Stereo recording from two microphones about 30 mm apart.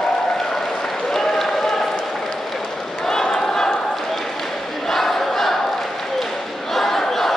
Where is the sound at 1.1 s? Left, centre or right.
Centre.